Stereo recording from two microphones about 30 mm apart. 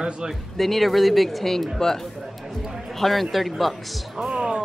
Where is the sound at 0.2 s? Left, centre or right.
Right.